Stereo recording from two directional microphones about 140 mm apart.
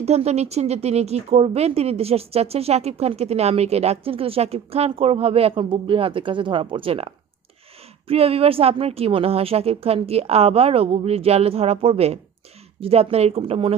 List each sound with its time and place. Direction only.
0.0 s speech: 50° right (ahead or behind)